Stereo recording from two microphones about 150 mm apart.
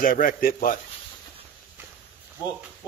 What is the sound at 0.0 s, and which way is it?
Speech, 65° left (ahead or behind).